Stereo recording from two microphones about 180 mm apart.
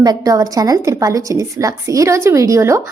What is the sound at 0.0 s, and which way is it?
A woman's voice, 20° right (ahead or behind).